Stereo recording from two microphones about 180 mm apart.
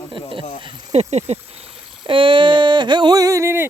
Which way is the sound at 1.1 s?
35° right (ahead or behind).